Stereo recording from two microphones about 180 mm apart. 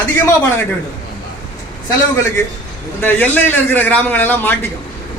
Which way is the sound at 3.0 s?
10° left (ahead or behind).